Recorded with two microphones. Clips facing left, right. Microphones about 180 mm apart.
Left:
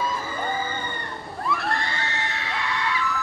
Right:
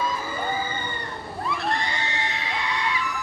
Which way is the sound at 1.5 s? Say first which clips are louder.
Even; 20° right (ahead or behind).